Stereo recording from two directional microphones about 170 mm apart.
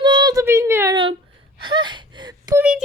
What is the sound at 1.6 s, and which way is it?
Whimper, 25° right (ahead or behind).